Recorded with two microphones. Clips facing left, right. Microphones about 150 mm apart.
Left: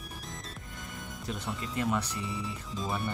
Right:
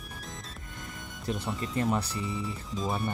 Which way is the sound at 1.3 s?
35° right (ahead or behind).